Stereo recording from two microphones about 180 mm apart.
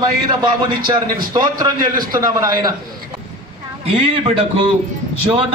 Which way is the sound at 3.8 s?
30° right (ahead or behind).